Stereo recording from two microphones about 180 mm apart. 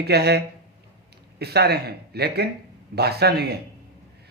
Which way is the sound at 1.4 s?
65° right (ahead or behind).